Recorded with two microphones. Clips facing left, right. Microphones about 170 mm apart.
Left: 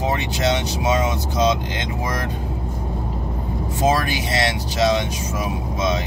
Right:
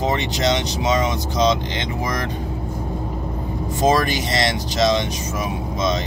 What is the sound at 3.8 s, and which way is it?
Speech, 5° left (ahead or behind).